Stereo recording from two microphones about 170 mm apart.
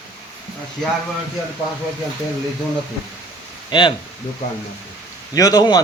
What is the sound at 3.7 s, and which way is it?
Speech, 25° left (ahead or behind).